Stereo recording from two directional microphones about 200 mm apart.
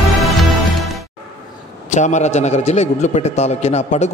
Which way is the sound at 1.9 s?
35° left (ahead or behind).